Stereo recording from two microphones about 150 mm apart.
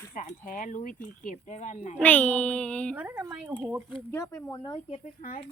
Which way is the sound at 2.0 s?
10° left (ahead or behind).